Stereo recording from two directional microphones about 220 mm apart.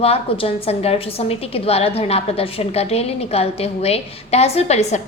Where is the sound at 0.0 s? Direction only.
25° left (ahead or behind).